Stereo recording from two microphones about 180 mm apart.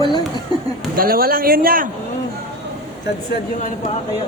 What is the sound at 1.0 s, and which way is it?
Speech, 55° right (ahead or behind).